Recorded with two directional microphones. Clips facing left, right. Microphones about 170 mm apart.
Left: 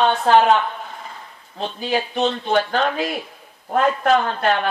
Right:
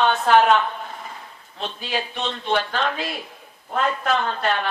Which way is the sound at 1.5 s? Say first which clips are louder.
Left 5 dB; 40° left (ahead or behind).